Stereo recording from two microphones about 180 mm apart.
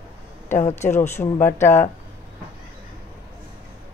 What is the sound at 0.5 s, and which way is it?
Speech, 40° left (ahead or behind).